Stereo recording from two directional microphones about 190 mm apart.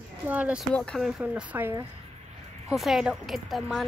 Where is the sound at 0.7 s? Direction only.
5° left (ahead or behind).